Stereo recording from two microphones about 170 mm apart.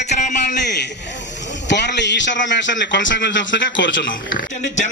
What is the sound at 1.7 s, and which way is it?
A man's voice, 90° left.